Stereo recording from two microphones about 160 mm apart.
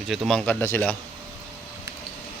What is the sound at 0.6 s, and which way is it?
Speech, 15° left (ahead or behind).